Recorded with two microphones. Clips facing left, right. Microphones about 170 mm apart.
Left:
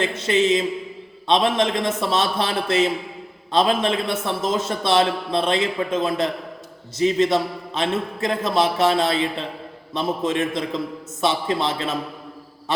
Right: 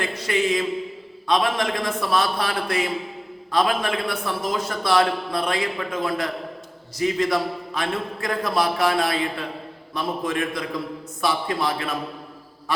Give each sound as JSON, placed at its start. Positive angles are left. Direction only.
{"t": 0.0, "sound": "a man's voice", "side_deg": 25}